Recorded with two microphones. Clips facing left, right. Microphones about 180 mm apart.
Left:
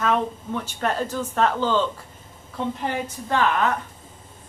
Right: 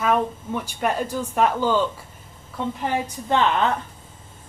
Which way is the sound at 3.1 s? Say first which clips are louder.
Right 1 dB; 20° right (ahead or behind).